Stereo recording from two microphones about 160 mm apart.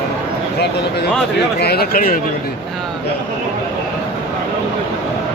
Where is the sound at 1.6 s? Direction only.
80° left.